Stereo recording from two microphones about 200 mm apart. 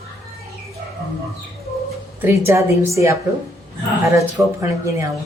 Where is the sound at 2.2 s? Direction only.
10° right (ahead or behind).